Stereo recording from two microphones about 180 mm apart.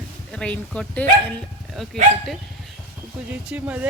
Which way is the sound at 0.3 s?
5° left (ahead or behind).